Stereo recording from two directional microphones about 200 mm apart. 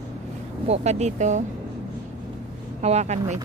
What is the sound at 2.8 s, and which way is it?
Speech, 35° right (ahead or behind).